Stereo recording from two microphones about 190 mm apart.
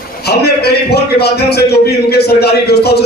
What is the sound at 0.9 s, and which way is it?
A man's voice, 60° left (ahead or behind).